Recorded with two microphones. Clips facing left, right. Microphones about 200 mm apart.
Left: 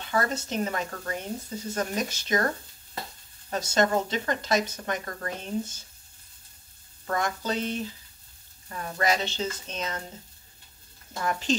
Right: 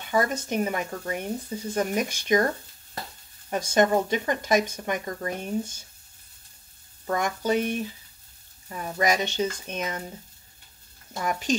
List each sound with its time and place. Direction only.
0.0 s speech: 15° right (ahead or behind)
3.4 s speech: 15° right (ahead or behind)
7.1 s speech: 15° right (ahead or behind)
11.2 s speech: 15° right (ahead or behind)